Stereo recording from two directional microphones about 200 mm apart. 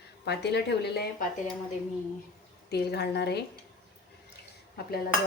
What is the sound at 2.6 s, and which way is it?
Speech, 55° left (ahead or behind).